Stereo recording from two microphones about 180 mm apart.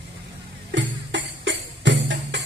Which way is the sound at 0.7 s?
90° right.